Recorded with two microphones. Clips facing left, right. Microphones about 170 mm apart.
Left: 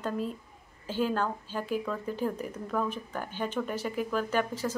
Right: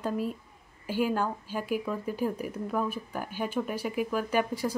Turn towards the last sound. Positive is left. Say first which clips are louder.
# right 1 dB
turn(degrees=-10)  # may be behind; listen again after turning